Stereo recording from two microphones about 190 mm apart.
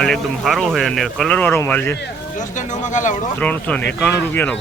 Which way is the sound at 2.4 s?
40° left (ahead or behind).